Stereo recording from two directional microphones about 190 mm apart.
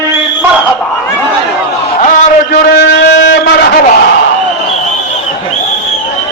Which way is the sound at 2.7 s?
65° left (ahead or behind).